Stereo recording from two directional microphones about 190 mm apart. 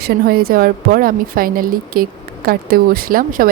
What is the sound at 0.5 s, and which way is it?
Speech, 50° right (ahead or behind).